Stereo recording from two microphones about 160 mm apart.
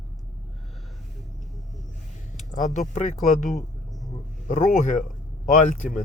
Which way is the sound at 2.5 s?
50° left (ahead or behind).